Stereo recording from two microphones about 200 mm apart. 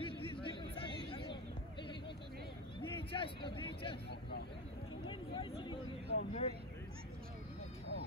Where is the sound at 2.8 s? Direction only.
25° left (ahead or behind).